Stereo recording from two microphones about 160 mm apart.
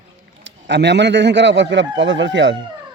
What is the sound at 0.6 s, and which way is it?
A man's voice, 90° right.